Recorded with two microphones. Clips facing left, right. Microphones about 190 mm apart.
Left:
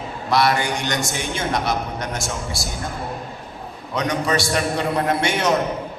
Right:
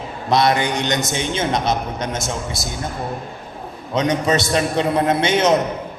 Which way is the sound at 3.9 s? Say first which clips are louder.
Right 3 dB; 20° right (ahead or behind).